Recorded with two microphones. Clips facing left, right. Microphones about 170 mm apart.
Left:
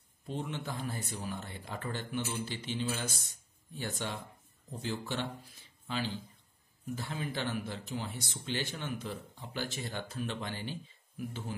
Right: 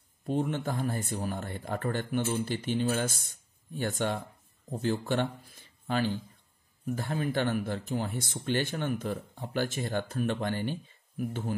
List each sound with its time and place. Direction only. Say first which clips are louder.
0.3 s speech: right 8 dB; 50° right (ahead or behind)